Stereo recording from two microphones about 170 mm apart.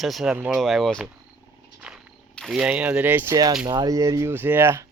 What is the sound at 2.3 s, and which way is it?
Speech, centre (ahead or behind).